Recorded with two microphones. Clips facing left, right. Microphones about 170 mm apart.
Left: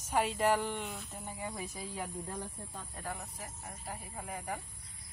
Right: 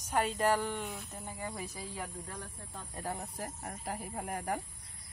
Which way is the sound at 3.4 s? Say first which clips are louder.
Right 5 dB; 50° right (ahead or behind).